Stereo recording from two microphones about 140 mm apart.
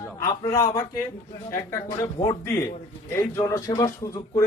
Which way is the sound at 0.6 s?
20° left (ahead or behind).